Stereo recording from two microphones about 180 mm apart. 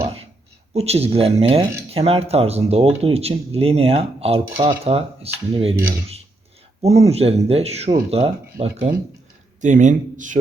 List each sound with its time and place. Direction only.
0.7 s speech: 35° right (ahead or behind)